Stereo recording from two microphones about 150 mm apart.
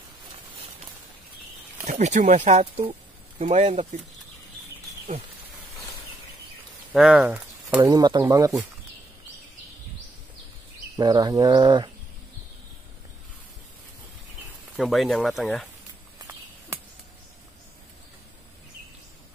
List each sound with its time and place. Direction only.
1.9 s speech: 50° right (ahead or behind)
6.9 s speech: 5° right (ahead or behind)
7.9 s bird: 30° right (ahead or behind)
11.0 s bird: 25° right (ahead or behind)
14.8 s speech: centre (ahead or behind)